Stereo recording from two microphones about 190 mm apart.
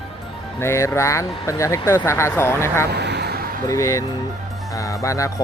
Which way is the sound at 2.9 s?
60° right (ahead or behind).